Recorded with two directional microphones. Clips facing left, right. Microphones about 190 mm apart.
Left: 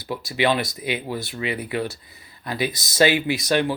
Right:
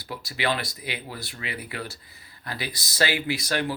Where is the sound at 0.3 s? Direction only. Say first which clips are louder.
Left 6 dB; 20° left (ahead or behind).